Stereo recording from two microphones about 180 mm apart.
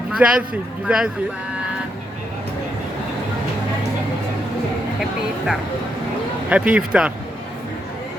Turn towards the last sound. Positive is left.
turn(degrees=-5)  # may be behind; listen again after turning